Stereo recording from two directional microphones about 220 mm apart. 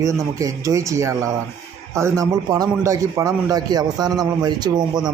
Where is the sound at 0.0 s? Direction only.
15° right (ahead or behind).